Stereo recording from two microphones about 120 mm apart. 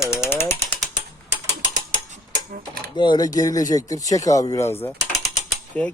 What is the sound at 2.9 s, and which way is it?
Speech, 40° left (ahead or behind).